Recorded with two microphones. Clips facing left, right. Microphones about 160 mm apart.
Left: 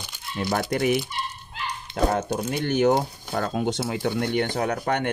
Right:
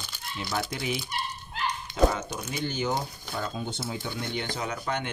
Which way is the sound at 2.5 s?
60° left (ahead or behind).